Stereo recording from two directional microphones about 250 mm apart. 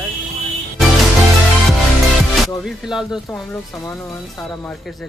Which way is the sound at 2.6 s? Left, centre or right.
Centre.